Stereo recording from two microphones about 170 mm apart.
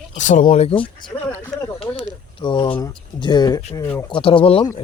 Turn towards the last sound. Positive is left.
turn(degrees=30)  # may be behind; listen again after turning